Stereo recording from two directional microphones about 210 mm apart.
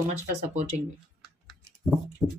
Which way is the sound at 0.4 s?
30° right (ahead or behind).